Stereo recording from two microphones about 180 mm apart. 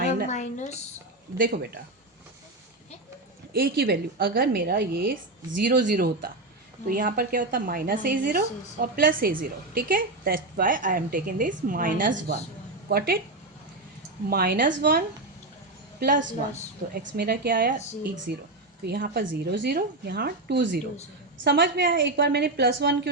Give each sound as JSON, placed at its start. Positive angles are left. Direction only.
{"t": 0.3, "sound": "a sound", "side_deg": 40}
{"t": 1.4, "sound": "a woman's voice", "side_deg": -60}
{"t": 3.5, "sound": "a woman's voice", "side_deg": -55}
{"t": 12.9, "sound": "a woman's voice", "side_deg": -60}
{"t": 14.3, "sound": "a woman's voice", "side_deg": -60}
{"t": 16.0, "sound": "speech", "side_deg": -50}
{"t": 17.0, "sound": "a woman's voice", "side_deg": -75}